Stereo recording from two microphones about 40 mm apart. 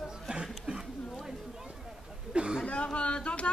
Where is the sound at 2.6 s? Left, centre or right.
Left.